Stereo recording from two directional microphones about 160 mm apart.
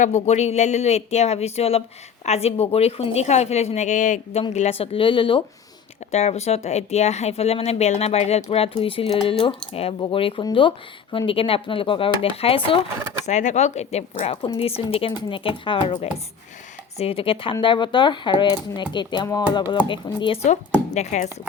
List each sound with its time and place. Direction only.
0.0 s speech: 45° left (ahead or behind)
4.5 s speech: 40° left (ahead or behind)
6.1 s speech: 40° left (ahead or behind)
13.2 s speech: 50° left (ahead or behind)